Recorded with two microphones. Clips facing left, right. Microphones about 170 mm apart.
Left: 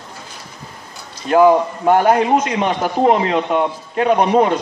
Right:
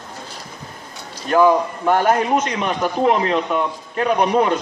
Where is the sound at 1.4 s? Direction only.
15° left (ahead or behind).